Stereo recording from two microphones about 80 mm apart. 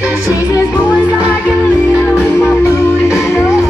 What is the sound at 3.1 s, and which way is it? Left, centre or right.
Music, left.